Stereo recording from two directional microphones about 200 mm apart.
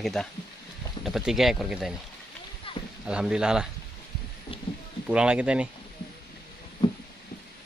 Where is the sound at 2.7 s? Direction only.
25° left (ahead or behind).